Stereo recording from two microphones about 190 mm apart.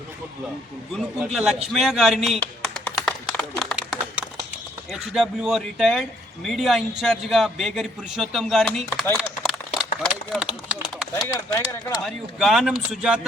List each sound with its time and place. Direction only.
0.9 s speech: centre (ahead or behind)
2.4 s typing: 5° left (ahead or behind)
4.9 s speech: centre (ahead or behind)
9.0 s a sound: 10° left (ahead or behind)
9.5 s a sound: 5° right (ahead or behind)
11.3 s speech: 15° left (ahead or behind)
12.0 s speech: centre (ahead or behind)